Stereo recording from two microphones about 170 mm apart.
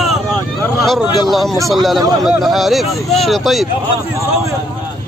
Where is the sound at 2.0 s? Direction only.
20° right (ahead or behind).